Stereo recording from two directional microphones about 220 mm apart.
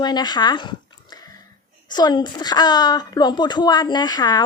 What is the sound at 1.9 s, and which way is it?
A woman's voice, 20° left (ahead or behind).